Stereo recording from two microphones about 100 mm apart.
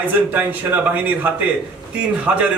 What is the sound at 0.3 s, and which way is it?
A man's voice, 15° right (ahead or behind).